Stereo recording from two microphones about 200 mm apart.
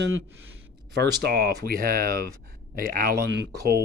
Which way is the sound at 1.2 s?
55° right (ahead or behind).